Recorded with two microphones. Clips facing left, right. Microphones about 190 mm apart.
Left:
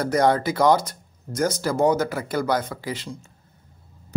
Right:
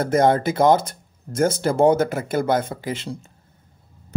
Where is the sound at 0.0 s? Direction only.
25° right (ahead or behind).